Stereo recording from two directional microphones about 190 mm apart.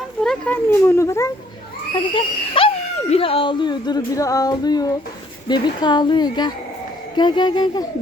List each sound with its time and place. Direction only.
0.2 s speech: 5° left (ahead or behind)
2.1 s speech: 30° left (ahead or behind)